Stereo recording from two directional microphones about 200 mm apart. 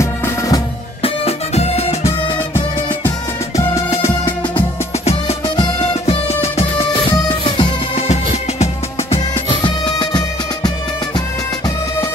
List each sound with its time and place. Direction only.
0.0 s drum: 15° left (ahead or behind)
1.0 s music: 30° left (ahead or behind)
2.0 s music: 10° left (ahead or behind)
5.6 s music: 30° left (ahead or behind)